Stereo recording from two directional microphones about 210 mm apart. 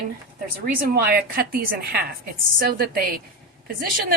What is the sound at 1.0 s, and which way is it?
Speech, 45° right (ahead or behind).